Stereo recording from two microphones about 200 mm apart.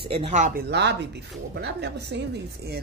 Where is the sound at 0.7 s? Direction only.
60° right (ahead or behind).